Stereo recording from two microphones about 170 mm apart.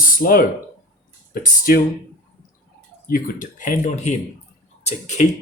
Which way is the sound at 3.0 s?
55° left (ahead or behind).